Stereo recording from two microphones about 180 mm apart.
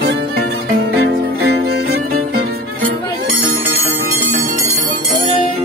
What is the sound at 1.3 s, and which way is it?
Music, 60° right (ahead or behind).